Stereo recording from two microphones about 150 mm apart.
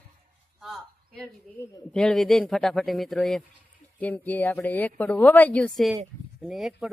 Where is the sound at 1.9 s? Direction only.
5° left (ahead or behind).